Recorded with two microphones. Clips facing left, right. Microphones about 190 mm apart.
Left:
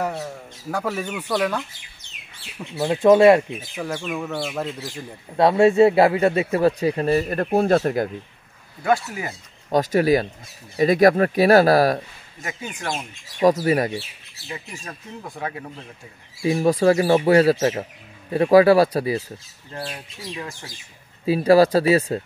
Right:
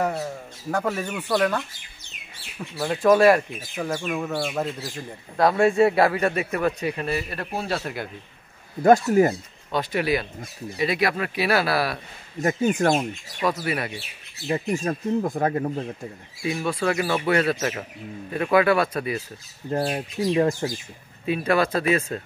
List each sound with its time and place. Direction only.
0.0 s speech: centre (ahead or behind)
1.0 s speech: 10° right (ahead or behind)
1.3 s speech: 10° left (ahead or behind)
2.7 s speech: 20° left (ahead or behind)
3.7 s speech: 5° left (ahead or behind)
5.3 s speech: 25° left (ahead or behind); by 8.1 s 45° left (ahead or behind)
8.8 s speech: 45° right (ahead or behind)
9.7 s speech: 45° left (ahead or behind)
12.4 s speech: 45° right (ahead or behind)
13.4 s speech: 40° left (ahead or behind)
14.5 s speech: 45° right (ahead or behind)
16.4 s speech: 35° left (ahead or behind)
19.7 s speech: 45° right (ahead or behind)
21.3 s speech: 35° left (ahead or behind)